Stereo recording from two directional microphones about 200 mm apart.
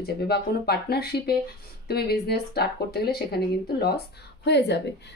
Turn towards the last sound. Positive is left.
turn(degrees=60)  # may be behind; listen again after turning